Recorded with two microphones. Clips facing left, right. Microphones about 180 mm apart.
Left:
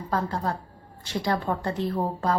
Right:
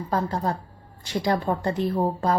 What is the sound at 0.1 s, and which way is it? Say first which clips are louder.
A woman's voice: right 2 dB; 15° right (ahead or behind).